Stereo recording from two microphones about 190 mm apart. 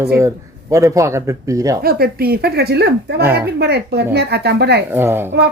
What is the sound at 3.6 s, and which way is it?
Speech, 60° right (ahead or behind).